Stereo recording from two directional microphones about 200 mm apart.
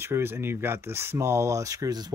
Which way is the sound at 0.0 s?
10° right (ahead or behind).